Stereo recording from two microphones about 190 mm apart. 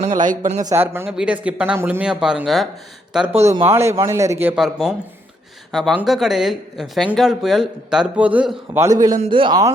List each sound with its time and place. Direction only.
0.0 s speech: 40° right (ahead or behind)
0.6 s speech: 15° right (ahead or behind)
3.4 s speech: 25° right (ahead or behind)